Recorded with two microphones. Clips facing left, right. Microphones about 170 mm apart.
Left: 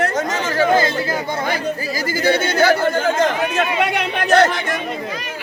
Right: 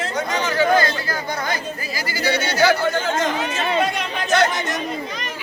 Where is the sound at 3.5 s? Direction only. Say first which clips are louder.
Left 2 dB; 65° left (ahead or behind).